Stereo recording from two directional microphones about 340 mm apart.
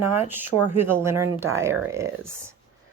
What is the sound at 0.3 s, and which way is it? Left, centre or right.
A woman's voice, centre.